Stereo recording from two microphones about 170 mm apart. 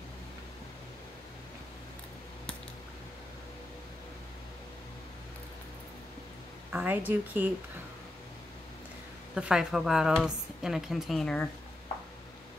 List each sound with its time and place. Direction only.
6.7 s speech: 10° right (ahead or behind)
9.3 s a woman's voice: 5° right (ahead or behind)